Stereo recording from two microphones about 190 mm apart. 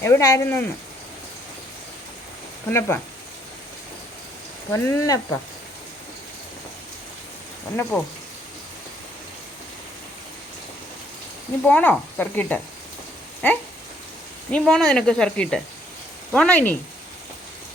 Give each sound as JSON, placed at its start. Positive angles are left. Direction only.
{"t": 0.0, "sound": "speech", "side_deg": 15}
{"t": 2.6, "sound": "speech", "side_deg": 10}
{"t": 4.7, "sound": "speech", "side_deg": 15}
{"t": 7.8, "sound": "speech", "side_deg": 5}
{"t": 11.6, "sound": "speech", "side_deg": 10}